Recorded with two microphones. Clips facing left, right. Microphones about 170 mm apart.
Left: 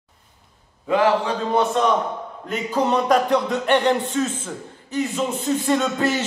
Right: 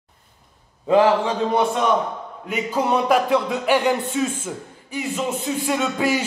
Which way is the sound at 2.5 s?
5° right (ahead or behind).